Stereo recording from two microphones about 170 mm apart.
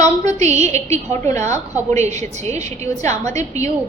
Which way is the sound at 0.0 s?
40° right (ahead or behind).